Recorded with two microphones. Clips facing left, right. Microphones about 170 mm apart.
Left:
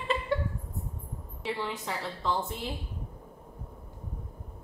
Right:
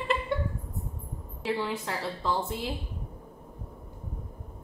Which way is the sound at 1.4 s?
5° right (ahead or behind).